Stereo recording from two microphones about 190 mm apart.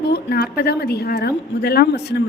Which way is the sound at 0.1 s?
55° left (ahead or behind).